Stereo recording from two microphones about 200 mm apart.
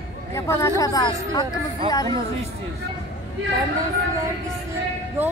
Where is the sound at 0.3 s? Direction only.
15° left (ahead or behind).